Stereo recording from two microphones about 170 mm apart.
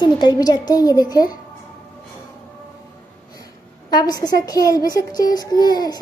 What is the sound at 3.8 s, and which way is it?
A woman's voice, 25° left (ahead or behind).